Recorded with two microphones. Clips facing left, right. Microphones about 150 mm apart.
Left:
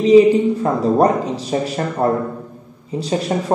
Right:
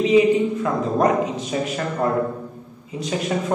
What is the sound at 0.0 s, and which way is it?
A man's voice, 35° left (ahead or behind).